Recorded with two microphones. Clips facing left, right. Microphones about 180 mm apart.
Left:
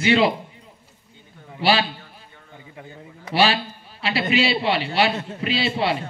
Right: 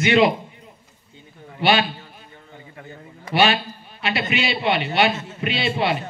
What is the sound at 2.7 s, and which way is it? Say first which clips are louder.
Speech: left 1 dB; 10° left (ahead or behind).